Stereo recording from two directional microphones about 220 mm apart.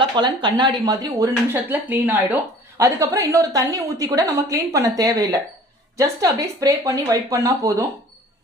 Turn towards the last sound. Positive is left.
turn(degrees=-15)  # may be behind; listen again after turning